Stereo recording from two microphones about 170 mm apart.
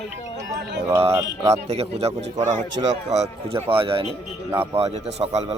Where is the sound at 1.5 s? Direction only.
40° right (ahead or behind).